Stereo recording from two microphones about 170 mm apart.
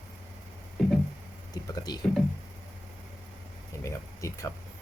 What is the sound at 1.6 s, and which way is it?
Speech, 25° left (ahead or behind).